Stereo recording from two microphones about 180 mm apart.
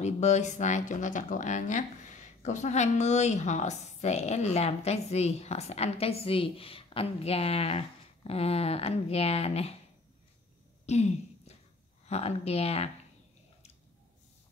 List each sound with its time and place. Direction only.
0.0 s speech: 40° left (ahead or behind)
10.9 s speech: 40° left (ahead or behind)